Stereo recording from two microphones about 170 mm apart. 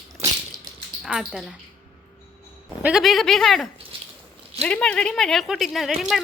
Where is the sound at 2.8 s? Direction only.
Centre (ahead or behind).